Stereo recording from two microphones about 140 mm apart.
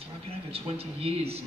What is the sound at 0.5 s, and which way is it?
Speech, 45° right (ahead or behind).